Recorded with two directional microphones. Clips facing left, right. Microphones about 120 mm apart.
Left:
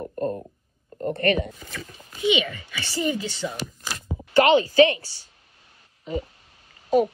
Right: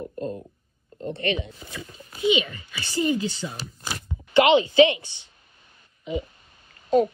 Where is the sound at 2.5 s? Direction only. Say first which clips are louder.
Right 2 dB; 35° right (ahead or behind).